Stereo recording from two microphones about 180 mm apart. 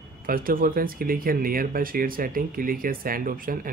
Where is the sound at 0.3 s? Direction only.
50° right (ahead or behind).